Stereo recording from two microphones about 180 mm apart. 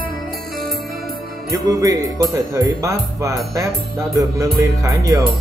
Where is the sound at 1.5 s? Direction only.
20° right (ahead or behind).